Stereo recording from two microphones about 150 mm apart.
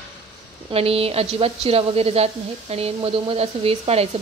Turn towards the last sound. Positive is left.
turn(degrees=-40)  # may be behind; listen again after turning